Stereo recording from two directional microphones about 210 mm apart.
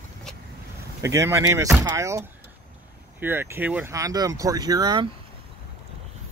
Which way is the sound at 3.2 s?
10° right (ahead or behind).